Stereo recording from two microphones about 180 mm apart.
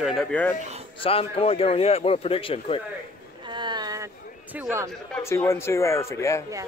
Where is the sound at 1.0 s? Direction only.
30° left (ahead or behind).